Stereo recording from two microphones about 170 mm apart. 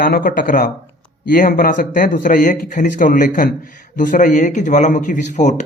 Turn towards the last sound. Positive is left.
turn(degrees=45)  # may be behind; listen again after turning